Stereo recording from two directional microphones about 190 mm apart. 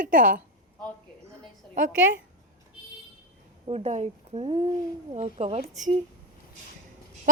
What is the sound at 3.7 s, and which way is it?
A woman's voice, 35° right (ahead or behind).